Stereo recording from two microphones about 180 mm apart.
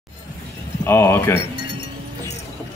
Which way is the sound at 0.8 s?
15° left (ahead or behind).